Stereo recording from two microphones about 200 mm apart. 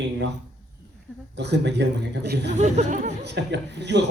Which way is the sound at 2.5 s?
35° right (ahead or behind).